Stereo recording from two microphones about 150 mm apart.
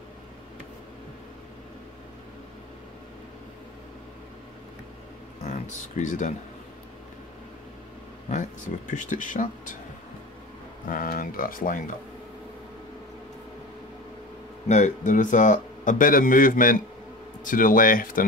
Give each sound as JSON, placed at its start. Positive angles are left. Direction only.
{"t": 5.9, "sound": "speech", "side_deg": 55}
{"t": 8.3, "sound": "speech", "side_deg": 55}
{"t": 10.9, "sound": "speech", "side_deg": 70}
{"t": 14.7, "sound": "speech", "side_deg": 55}